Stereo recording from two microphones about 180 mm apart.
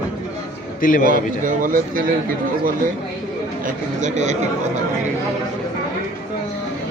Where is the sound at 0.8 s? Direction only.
50° left (ahead or behind).